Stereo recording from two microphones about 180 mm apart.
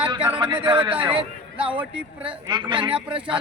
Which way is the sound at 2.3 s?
25° right (ahead or behind).